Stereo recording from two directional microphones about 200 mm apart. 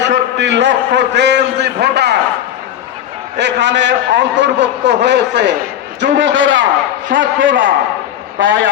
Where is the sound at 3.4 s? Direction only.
60° right (ahead or behind).